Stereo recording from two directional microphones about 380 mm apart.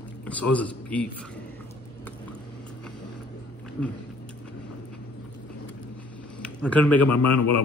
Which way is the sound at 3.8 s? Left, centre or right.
Centre.